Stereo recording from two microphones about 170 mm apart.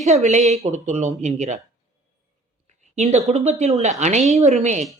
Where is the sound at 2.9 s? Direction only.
40° right (ahead or behind).